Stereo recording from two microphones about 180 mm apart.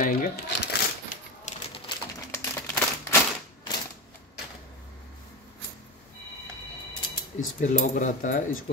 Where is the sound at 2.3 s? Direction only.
15° left (ahead or behind).